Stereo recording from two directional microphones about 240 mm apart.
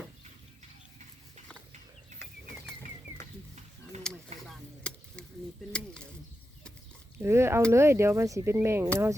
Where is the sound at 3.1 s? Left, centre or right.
Left.